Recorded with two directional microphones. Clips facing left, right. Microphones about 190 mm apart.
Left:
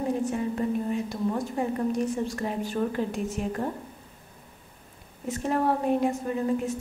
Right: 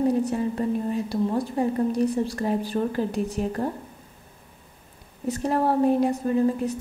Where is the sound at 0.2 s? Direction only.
35° right (ahead or behind).